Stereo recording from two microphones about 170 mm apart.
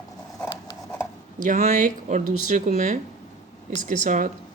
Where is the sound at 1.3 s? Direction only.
50° right (ahead or behind).